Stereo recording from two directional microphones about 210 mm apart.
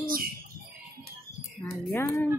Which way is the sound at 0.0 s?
45° right (ahead or behind).